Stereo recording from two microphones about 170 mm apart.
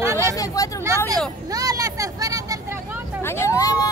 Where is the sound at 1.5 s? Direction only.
20° right (ahead or behind).